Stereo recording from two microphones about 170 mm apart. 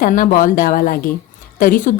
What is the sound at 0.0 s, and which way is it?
A woman's voice, 55° left (ahead or behind).